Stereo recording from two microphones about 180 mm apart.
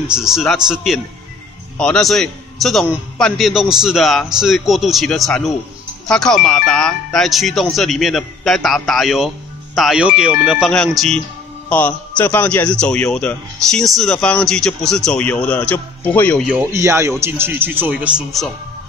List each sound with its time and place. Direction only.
0.1 s a man's voice: 5° right (ahead or behind)
16.4 s speech: 15° right (ahead or behind)